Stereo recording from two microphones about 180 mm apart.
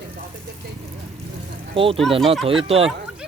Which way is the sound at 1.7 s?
30° right (ahead or behind).